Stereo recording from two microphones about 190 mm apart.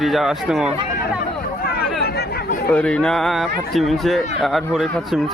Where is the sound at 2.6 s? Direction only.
5° left (ahead or behind).